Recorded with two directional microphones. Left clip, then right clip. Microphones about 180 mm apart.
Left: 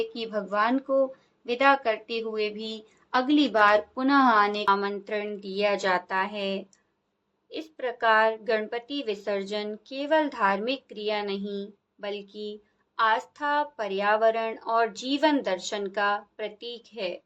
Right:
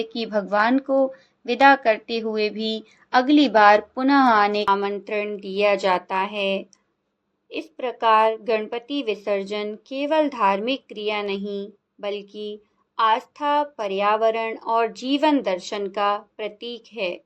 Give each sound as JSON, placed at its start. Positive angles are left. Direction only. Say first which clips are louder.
{"t": 0.0, "sound": "a woman's voice", "louder": "right 5 dB", "side_deg": -25}